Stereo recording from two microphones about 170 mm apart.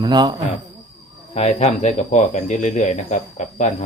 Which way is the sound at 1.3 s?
40° left (ahead or behind).